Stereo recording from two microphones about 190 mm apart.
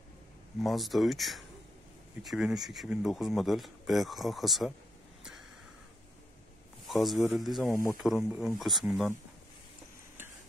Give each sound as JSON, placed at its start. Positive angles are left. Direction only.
{"t": 0.6, "sound": "speech", "side_deg": 0}
{"t": 6.9, "sound": "speech", "side_deg": 0}
{"t": 7.7, "sound": "speech", "side_deg": 15}
{"t": 8.0, "sound": "speech", "side_deg": -5}